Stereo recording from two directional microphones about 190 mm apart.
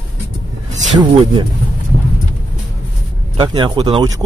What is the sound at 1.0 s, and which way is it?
Speech, 25° right (ahead or behind).